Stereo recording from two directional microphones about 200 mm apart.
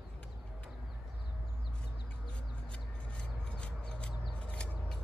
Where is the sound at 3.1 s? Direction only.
5° left (ahead or behind).